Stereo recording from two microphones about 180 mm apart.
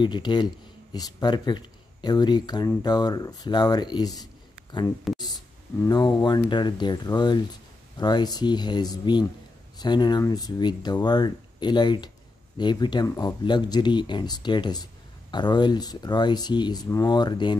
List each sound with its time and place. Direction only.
0.0 s speech: 25° left (ahead or behind)
5.2 s speech: 20° left (ahead or behind)